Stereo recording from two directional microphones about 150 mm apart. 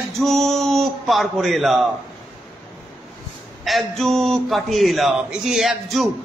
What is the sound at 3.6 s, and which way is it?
A man's voice, centre (ahead or behind).